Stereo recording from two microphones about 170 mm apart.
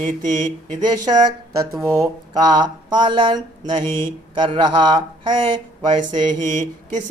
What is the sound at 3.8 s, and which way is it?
Mantra, 15° left (ahead or behind).